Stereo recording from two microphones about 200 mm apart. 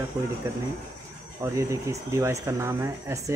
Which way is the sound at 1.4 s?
15° right (ahead or behind).